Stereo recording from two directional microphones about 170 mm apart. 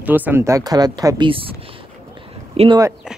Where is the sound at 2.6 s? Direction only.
35° right (ahead or behind).